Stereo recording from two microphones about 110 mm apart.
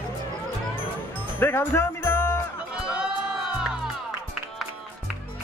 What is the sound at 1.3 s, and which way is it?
Music, 20° left (ahead or behind).